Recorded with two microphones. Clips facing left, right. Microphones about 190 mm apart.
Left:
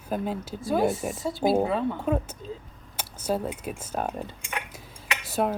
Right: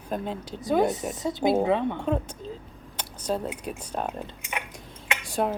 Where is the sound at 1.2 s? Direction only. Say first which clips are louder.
Right 1 dB; 20° right (ahead or behind).